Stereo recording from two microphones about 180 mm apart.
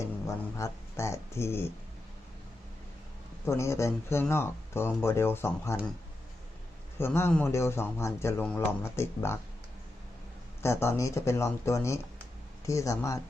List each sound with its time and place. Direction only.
0.3 s speech: 15° left (ahead or behind)
3.4 s speech: 15° left (ahead or behind)
7.0 s speech: 10° left (ahead or behind)
10.6 s speech: 15° left (ahead or behind)